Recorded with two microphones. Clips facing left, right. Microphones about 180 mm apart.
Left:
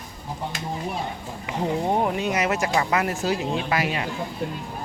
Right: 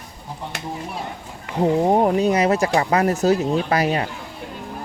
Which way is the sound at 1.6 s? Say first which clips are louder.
Right 7 dB; 40° right (ahead or behind).